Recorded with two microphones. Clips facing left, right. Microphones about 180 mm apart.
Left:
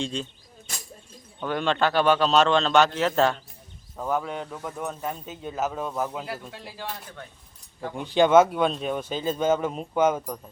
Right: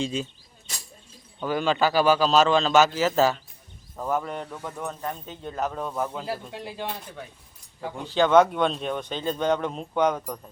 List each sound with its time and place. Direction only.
0.0 s speech: 5° right (ahead or behind)
1.4 s speech: 5° right (ahead or behind)
6.2 s speech: 20° right (ahead or behind)
7.9 s speech: 15° left (ahead or behind)